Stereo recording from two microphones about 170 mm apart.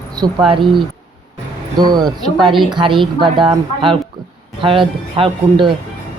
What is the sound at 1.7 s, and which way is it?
A woman's voice, 25° right (ahead or behind).